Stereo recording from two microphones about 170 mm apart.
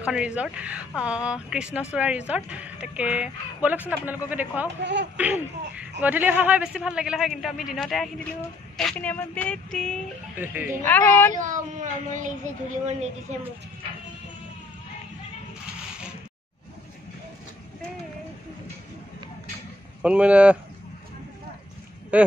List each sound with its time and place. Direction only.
0.0 s a man's voice: 5° right (ahead or behind)
10.4 s speech: 10° right (ahead or behind)
10.8 s speech: 10° left (ahead or behind)
11.3 s a woman's voice: 50° right (ahead or behind)
20.0 s speech: 5° right (ahead or behind)
22.1 s speech: 10° right (ahead or behind)